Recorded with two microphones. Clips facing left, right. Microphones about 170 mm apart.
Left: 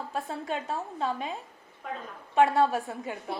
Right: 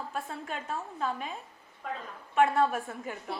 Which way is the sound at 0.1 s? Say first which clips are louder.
Left 4 dB; 35° left (ahead or behind).